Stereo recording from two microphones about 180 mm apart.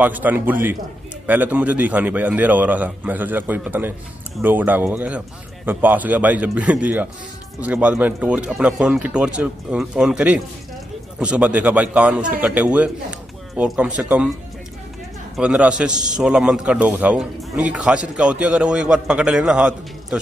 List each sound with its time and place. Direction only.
0.0 s a man's voice: 10° right (ahead or behind)
15.3 s a man's voice: 5° right (ahead or behind)